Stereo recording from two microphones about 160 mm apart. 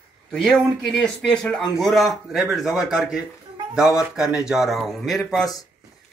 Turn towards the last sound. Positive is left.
turn(degrees=0)  # may be behind; listen again after turning